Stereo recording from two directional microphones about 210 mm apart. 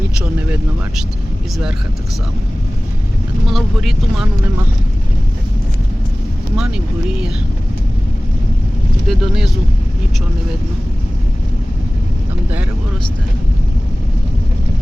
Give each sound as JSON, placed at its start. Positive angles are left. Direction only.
{"t": 0.2, "sound": "speech", "side_deg": -5}
{"t": 3.4, "sound": "speech", "side_deg": 0}
{"t": 6.6, "sound": "speech", "side_deg": -5}
{"t": 9.0, "sound": "speech", "side_deg": 0}